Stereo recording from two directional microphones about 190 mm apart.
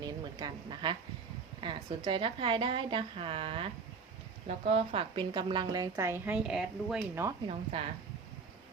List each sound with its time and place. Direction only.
0.0 s a woman's voice: 20° right (ahead or behind); by 7.1 s centre (ahead or behind)
7.7 s a woman's voice: 30° right (ahead or behind)